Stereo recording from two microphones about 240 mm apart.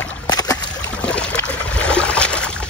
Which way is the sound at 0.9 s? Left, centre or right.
Centre.